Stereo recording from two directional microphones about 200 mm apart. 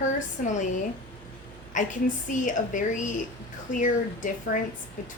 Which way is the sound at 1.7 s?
40° left (ahead or behind).